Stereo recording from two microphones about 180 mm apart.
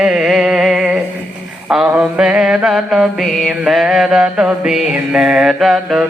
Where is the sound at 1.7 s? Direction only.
5° right (ahead or behind).